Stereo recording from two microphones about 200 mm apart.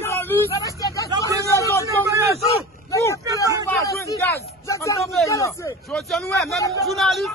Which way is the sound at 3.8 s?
15° left (ahead or behind).